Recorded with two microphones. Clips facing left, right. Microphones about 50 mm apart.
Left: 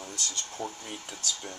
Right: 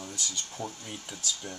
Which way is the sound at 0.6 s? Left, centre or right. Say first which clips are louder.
Left 2 dB; left.